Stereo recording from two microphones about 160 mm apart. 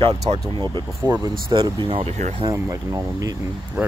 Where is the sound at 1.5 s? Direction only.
30° right (ahead or behind).